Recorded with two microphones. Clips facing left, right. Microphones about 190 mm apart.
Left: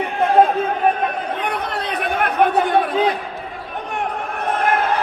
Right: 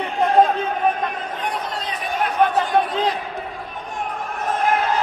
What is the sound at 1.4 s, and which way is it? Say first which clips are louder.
Chatter: left 3 dB; 60° left (ahead or behind).